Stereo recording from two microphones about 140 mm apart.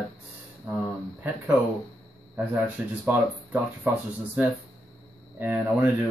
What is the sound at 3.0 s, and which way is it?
Speech, 10° right (ahead or behind).